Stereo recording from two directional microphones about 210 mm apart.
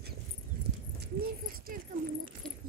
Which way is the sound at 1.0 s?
45° right (ahead or behind).